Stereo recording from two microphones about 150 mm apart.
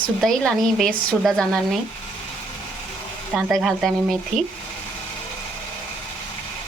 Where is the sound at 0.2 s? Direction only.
Centre (ahead or behind).